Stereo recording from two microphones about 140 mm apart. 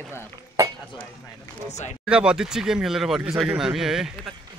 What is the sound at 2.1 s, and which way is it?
Speech, 5° right (ahead or behind).